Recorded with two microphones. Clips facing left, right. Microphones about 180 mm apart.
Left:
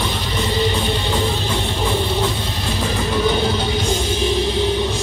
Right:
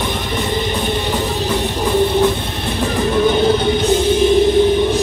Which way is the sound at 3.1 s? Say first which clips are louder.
Right 5 dB; 55° right (ahead or behind).